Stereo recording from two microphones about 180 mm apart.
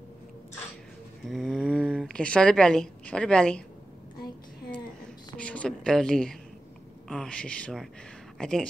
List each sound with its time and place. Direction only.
1.2 s speech: centre (ahead or behind)
5.4 s a woman's voice: 5° left (ahead or behind)